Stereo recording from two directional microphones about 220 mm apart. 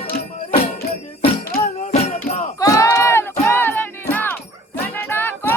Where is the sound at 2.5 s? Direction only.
15° left (ahead or behind).